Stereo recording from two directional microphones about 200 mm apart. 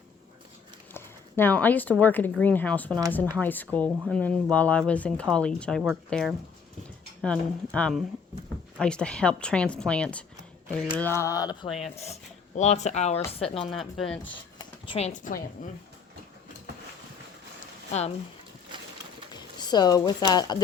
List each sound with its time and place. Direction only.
0.9 s speech: 10° left (ahead or behind)
11.9 s speech: 30° left (ahead or behind)
13.7 s speech: centre (ahead or behind)
14.6 s speech: 30° left (ahead or behind)
19.3 s speech: 20° left (ahead or behind)